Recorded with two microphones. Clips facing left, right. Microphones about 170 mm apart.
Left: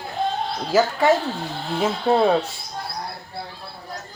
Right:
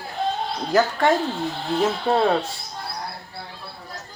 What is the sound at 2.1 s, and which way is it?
Speech, 5° left (ahead or behind).